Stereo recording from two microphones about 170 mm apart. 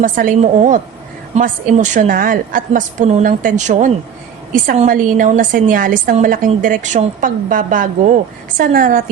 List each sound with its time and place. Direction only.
0.0 s a woman's voice: 50° right (ahead or behind)